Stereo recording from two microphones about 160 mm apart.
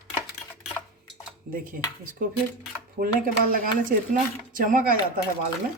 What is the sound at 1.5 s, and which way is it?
Speech, 60° right (ahead or behind).